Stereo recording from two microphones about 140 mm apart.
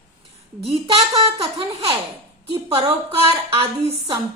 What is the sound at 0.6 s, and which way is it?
A woman's voice, 45° right (ahead or behind).